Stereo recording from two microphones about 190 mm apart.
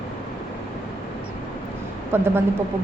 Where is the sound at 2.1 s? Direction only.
10° right (ahead or behind).